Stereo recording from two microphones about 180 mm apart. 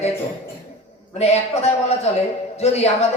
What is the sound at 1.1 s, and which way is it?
Speech, 35° left (ahead or behind).